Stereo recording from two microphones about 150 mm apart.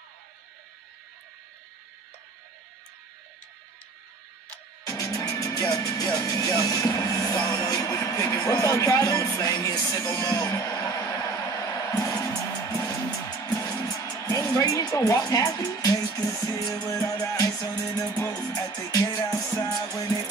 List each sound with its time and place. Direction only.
4.8 s speech: 20° left (ahead or behind)
13.5 s speech: 20° left (ahead or behind)